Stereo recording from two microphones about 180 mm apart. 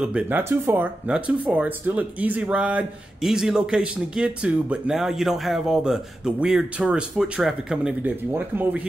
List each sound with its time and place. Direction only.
0.0 s speech: 5° right (ahead or behind)